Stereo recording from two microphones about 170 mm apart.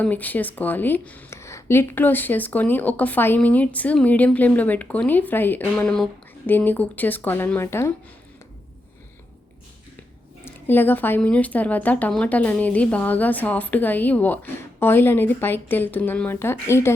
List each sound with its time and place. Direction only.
0.0 s speech: 10° left (ahead or behind)
10.4 s speech: 10° left (ahead or behind)